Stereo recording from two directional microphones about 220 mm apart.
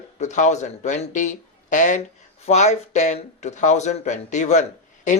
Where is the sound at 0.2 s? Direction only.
35° left (ahead or behind).